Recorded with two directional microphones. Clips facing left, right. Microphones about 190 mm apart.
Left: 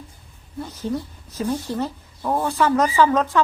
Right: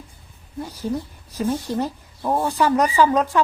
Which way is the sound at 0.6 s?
10° right (ahead or behind).